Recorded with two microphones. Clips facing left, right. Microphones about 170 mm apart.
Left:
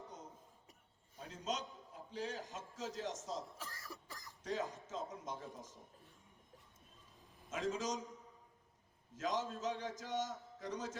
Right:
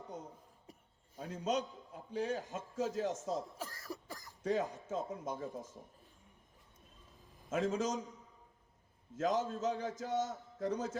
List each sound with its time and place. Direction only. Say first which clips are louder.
1.2 s a man's voice: right 7 dB; 60° right (ahead or behind)
3.6 s cough: right 7 dB; 40° right (ahead or behind)
4.4 s a man's voice: right 6 dB; 55° right (ahead or behind)
7.5 s a man's voice: right 5 dB; 55° right (ahead or behind)
9.1 s a man's voice: right 6 dB; 55° right (ahead or behind)